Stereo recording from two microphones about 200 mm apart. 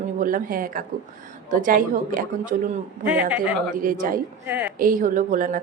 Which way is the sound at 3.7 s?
45° right (ahead or behind).